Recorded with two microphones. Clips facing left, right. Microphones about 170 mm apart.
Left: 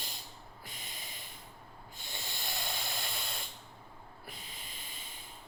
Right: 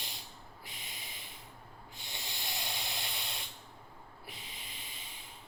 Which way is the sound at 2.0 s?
50° left (ahead or behind).